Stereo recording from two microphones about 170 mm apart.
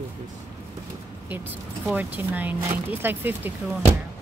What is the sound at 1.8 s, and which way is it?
Speech, 10° right (ahead or behind).